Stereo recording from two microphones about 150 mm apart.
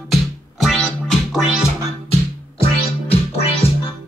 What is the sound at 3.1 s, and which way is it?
Music, 40° left (ahead or behind).